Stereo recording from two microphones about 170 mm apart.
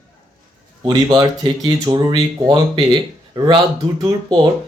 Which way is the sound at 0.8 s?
25° right (ahead or behind).